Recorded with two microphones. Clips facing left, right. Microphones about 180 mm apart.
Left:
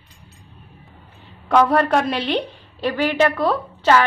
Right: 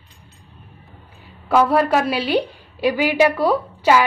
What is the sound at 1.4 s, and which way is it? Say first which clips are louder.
A woman's voice: even; 5° right (ahead or behind).